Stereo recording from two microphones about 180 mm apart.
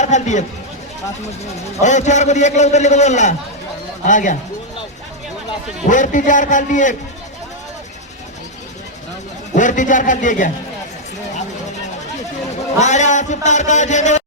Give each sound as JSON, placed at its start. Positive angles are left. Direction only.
{"t": 0.0, "sound": "a man's voice", "side_deg": 40}
{"t": 1.8, "sound": "a man's voice", "side_deg": 40}
{"t": 5.9, "sound": "a man's voice", "side_deg": 45}
{"t": 9.6, "sound": "a man's voice", "side_deg": 45}
{"t": 12.8, "sound": "a man's voice", "side_deg": 40}